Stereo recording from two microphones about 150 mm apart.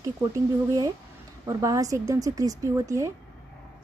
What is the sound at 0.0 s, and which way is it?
Speech, 20° right (ahead or behind).